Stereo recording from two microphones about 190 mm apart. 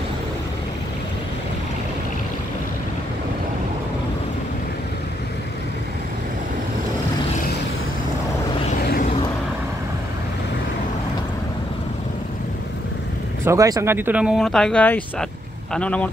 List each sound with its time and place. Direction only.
13.5 s speech: 15° right (ahead or behind); by 16.1 s 5° left (ahead or behind)